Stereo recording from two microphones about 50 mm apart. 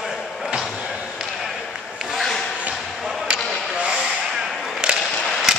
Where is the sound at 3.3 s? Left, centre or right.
Right.